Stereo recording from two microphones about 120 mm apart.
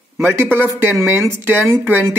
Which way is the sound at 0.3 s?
20° right (ahead or behind).